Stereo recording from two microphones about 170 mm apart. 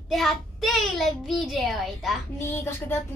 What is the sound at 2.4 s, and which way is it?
Speech, 15° left (ahead or behind).